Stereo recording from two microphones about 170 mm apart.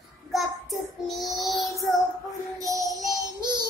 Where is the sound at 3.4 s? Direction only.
25° right (ahead or behind).